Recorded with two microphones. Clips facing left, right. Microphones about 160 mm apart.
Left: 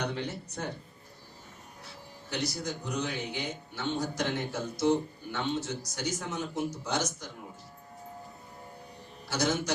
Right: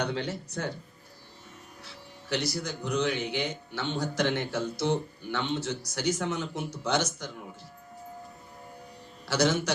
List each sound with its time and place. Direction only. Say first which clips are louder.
0.0 s speech: right 3 dB; 85° right
2.3 s a man's voice: right 3 dB; 75° right (ahead or behind)
9.2 s a man's voice: right 4 dB; 80° right